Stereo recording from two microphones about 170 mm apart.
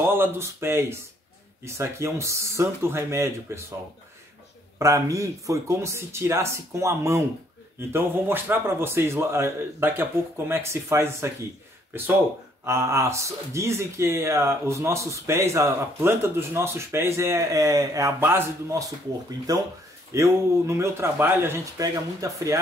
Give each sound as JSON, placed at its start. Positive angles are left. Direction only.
{"t": 0.0, "sound": "speech", "side_deg": -15}
{"t": 4.7, "sound": "speech", "side_deg": -20}
{"t": 12.6, "sound": "speech", "side_deg": -15}